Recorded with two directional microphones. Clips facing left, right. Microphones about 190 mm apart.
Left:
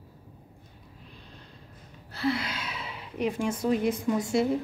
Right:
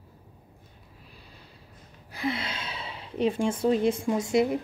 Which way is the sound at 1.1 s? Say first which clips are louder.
Left 1 dB; 10° right (ahead or behind).